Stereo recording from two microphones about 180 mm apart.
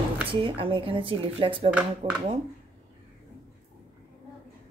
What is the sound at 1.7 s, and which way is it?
Speech, 5° right (ahead or behind).